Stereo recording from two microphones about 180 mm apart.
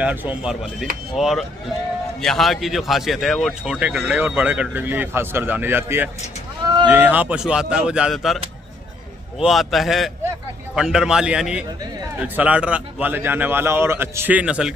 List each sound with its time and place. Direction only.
0.0 s a man's voice: 10° right (ahead or behind)
6.6 s a sound: 25° right (ahead or behind)
6.9 s speech: 10° right (ahead or behind)
9.4 s a man's voice: centre (ahead or behind)